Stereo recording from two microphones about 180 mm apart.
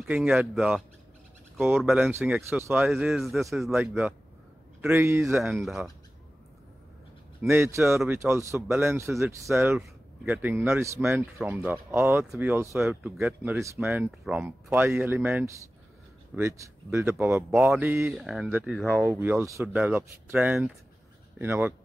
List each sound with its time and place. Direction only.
0.0 s a man's voice: 5° right (ahead or behind)
2.9 s a man's voice: centre (ahead or behind)
4.8 s speech: 15° right (ahead or behind)
5.3 s a man's voice: centre (ahead or behind)
7.4 s a man's voice: 15° right (ahead or behind)